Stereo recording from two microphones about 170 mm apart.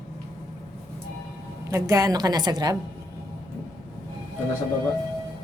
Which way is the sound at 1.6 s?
15° right (ahead or behind).